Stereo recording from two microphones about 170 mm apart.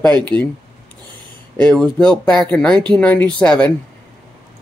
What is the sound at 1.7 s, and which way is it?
Speech, 5° left (ahead or behind).